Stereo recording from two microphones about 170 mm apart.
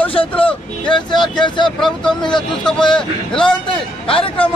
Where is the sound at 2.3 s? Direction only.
5° left (ahead or behind).